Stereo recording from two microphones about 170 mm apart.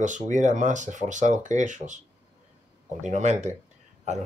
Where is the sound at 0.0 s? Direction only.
45° right (ahead or behind).